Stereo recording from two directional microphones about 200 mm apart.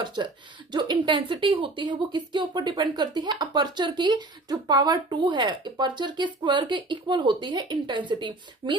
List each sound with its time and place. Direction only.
0.0 s speech: 20° right (ahead or behind)